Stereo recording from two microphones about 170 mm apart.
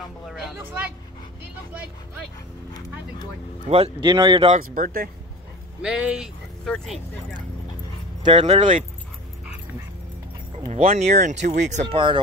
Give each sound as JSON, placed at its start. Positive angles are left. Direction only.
{"t": 3.6, "sound": "speech", "side_deg": -40}
{"t": 4.0, "sound": "speech", "side_deg": -25}
{"t": 4.5, "sound": "speech", "side_deg": -45}
{"t": 5.8, "sound": "speech", "side_deg": -5}
{"t": 8.2, "sound": "speech", "side_deg": -35}
{"t": 10.7, "sound": "speech", "side_deg": -40}